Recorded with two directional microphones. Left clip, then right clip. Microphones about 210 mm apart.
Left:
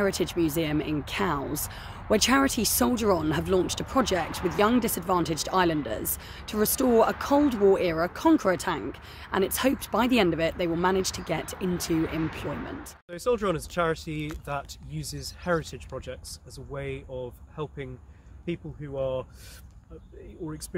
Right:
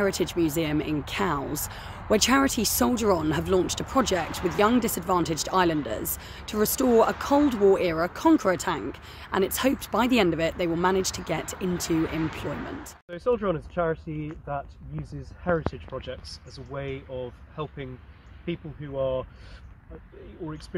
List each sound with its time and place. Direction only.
0.0 s speech: centre (ahead or behind)
13.1 s speech: 15° left (ahead or behind)